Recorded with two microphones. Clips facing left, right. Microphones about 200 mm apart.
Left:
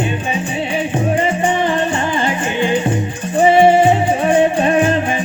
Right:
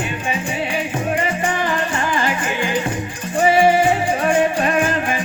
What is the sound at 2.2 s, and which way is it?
Music, 25° left (ahead or behind).